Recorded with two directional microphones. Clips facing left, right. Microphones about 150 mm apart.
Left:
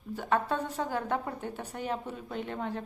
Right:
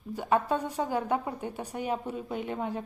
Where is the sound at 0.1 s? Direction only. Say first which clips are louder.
Right 2 dB; 15° right (ahead or behind).